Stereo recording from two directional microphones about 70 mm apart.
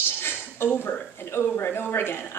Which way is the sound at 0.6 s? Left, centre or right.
Left.